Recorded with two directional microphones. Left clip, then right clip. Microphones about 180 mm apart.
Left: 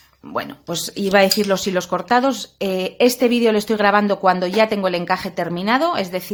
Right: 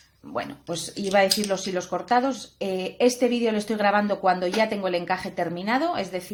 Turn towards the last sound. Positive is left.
turn(degrees=35)  # may be behind; listen again after turning